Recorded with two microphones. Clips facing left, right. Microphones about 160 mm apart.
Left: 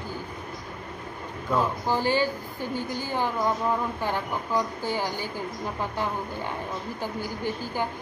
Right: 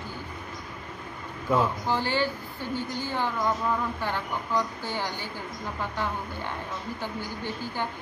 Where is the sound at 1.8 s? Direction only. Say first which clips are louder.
Left 3 dB; 15° left (ahead or behind).